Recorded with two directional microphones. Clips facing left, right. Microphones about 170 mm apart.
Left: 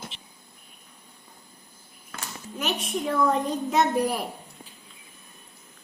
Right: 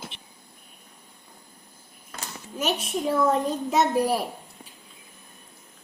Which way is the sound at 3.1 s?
10° right (ahead or behind).